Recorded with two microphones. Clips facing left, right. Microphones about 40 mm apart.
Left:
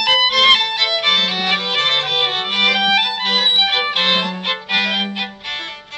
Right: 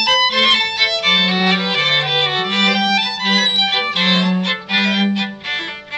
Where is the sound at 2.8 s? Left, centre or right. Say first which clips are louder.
Left 1 dB; left.